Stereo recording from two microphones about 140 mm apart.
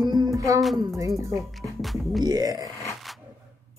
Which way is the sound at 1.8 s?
Centre (ahead or behind).